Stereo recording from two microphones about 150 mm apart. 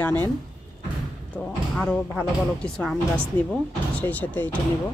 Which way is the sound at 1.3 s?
5° left (ahead or behind).